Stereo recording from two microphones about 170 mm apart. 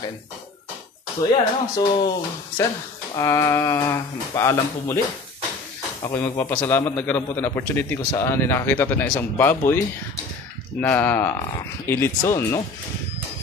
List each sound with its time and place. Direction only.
1.3 s a man's voice: 25° left (ahead or behind)
6.0 s a man's voice: 15° left (ahead or behind)
10.8 s a man's voice: 10° left (ahead or behind)